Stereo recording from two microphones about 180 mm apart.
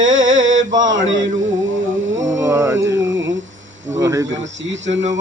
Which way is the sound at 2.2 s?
15° right (ahead or behind).